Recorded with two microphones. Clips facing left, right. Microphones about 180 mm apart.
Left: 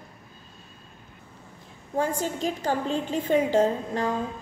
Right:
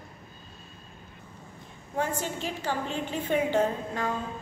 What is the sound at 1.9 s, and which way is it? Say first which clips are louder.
A woman's voice: left 4 dB; 40° left (ahead or behind).